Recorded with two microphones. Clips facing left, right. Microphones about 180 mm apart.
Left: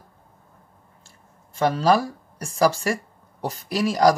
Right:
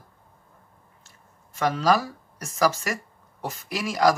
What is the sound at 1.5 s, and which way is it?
Speech, 30° left (ahead or behind).